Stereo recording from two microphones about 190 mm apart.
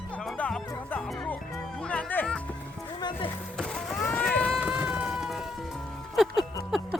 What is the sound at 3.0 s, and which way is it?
Music, 25° left (ahead or behind).